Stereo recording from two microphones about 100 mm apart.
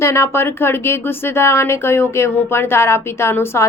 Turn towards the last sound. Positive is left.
turn(degrees=25)  # may be behind; listen again after turning